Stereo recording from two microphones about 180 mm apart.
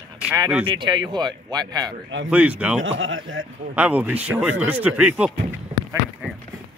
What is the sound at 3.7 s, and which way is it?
Speech, 10° right (ahead or behind).